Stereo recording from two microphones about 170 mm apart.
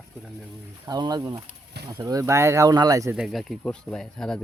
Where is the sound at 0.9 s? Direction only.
25° right (ahead or behind).